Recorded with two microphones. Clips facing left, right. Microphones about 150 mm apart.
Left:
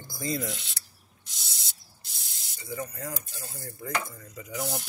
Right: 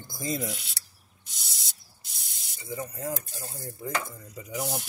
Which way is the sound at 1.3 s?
Centre (ahead or behind).